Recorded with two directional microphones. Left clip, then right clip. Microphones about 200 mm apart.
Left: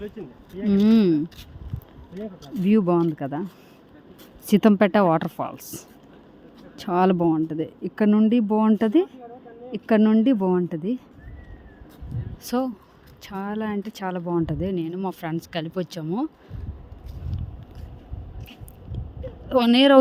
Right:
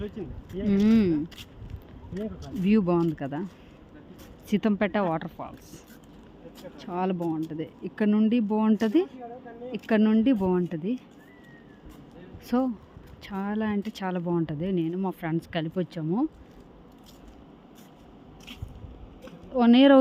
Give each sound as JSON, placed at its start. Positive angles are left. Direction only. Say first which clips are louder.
{"t": 0.6, "sound": "speech", "louder": "left 4 dB", "side_deg": 15}
{"t": 2.4, "sound": "speech", "louder": "left 4 dB", "side_deg": 15}
{"t": 4.4, "sound": "speech", "louder": "left 8 dB", "side_deg": 25}
{"t": 12.5, "sound": "speech", "louder": "left 2 dB", "side_deg": 25}
{"t": 19.5, "sound": "speech", "louder": "left 2 dB", "side_deg": 30}